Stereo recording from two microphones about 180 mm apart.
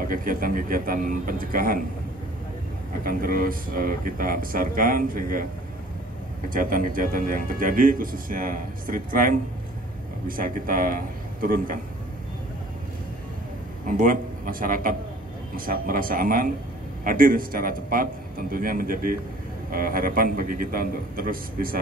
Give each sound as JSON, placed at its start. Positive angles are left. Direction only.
{"t": 0.0, "sound": "a man's voice", "side_deg": -50}
{"t": 3.0, "sound": "a man's voice", "side_deg": -55}
{"t": 6.5, "sound": "a man's voice", "side_deg": -50}
{"t": 13.8, "sound": "a man's voice", "side_deg": -50}